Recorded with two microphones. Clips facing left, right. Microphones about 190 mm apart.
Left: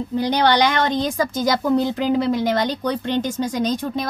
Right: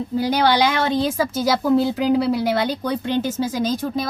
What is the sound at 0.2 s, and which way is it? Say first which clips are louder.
A woman's voice: even; 10° right (ahead or behind).